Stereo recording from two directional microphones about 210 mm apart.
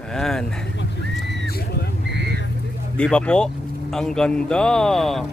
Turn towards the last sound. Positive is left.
turn(degrees=0)  # may be behind; listen again after turning